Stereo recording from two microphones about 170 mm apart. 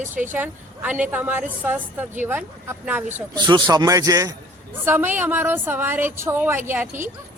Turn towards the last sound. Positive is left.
turn(degrees=-10)  # may be behind; listen again after turning